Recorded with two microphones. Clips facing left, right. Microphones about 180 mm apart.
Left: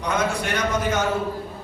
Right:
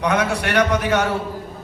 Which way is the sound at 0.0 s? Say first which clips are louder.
Right 4 dB; 70° right (ahead or behind).